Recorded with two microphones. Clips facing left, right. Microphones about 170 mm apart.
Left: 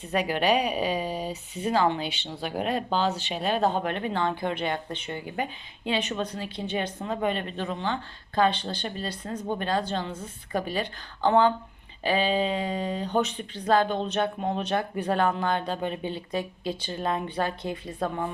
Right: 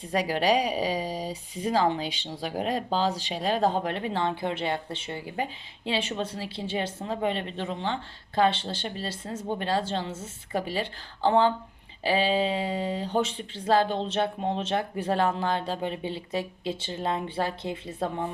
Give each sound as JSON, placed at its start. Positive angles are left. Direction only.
{"t": 0.0, "sound": "speech", "side_deg": -35}